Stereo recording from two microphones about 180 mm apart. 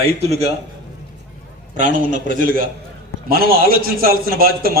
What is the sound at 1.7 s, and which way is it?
A man's voice, 45° right (ahead or behind).